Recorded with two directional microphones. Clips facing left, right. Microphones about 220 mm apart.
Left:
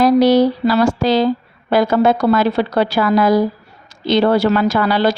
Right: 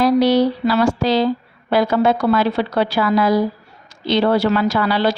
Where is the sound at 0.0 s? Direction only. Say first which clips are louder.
Left 3 dB; 45° left (ahead or behind).